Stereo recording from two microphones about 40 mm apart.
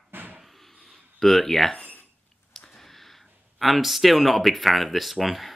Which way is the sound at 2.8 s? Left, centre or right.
Centre.